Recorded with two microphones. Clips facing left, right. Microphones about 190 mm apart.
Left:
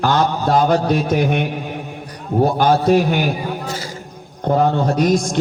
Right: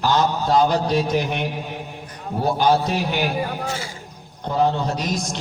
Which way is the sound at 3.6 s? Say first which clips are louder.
Left 1 dB; 40° left (ahead or behind).